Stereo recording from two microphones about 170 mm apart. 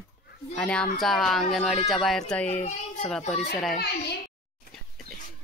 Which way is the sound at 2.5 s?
40° left (ahead or behind).